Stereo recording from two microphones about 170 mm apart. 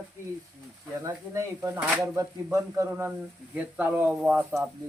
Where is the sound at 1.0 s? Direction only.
15° right (ahead or behind).